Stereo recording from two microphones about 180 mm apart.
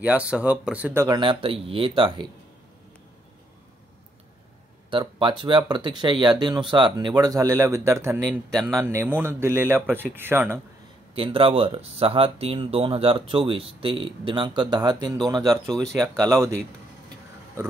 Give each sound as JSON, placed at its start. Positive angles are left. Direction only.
{"t": 0.0, "sound": "speech", "side_deg": -5}
{"t": 1.0, "sound": "speech", "side_deg": -25}
{"t": 4.9, "sound": "speech", "side_deg": -25}
{"t": 8.3, "sound": "speech", "side_deg": 5}
{"t": 8.8, "sound": "speech", "side_deg": -15}
{"t": 11.1, "sound": "speech", "side_deg": -30}
{"t": 15.4, "sound": "speech", "side_deg": 0}
{"t": 16.3, "sound": "speech", "side_deg": -15}